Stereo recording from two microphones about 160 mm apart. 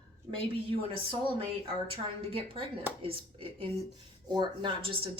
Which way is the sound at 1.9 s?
35° right (ahead or behind).